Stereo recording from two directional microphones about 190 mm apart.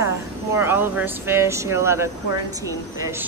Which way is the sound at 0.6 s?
10° right (ahead or behind).